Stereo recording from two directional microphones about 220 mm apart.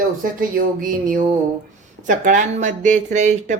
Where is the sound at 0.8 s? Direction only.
35° right (ahead or behind).